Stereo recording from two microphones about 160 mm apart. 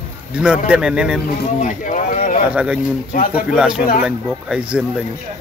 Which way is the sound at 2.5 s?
5° right (ahead or behind).